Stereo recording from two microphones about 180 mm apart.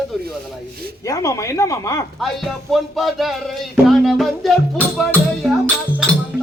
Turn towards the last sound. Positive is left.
turn(degrees=0)  # may be behind; listen again after turning